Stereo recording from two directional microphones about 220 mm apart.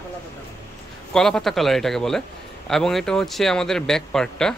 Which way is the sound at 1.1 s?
Centre (ahead or behind).